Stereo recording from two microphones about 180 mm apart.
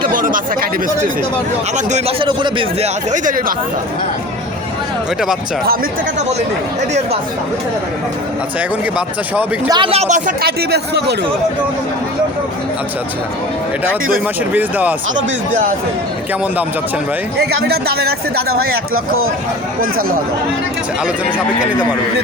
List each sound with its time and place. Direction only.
0.1 s speech: 50° right (ahead or behind)
1.7 s speech: 35° right (ahead or behind)
3.1 s speech: 50° right (ahead or behind)
5.6 s speech: 55° right (ahead or behind)
9.0 s a man's voice: 10° right (ahead or behind)
9.6 s speech: 25° right (ahead or behind)
10.4 s speech: 65° right (ahead or behind)
14.5 s a man's voice: 10° right (ahead or behind)
17.6 s speech: 60° right (ahead or behind)
21.2 s a man's voice: 5° right (ahead or behind)